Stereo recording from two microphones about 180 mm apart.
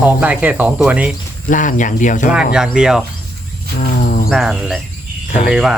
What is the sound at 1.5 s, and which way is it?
Speech, 45° left (ahead or behind).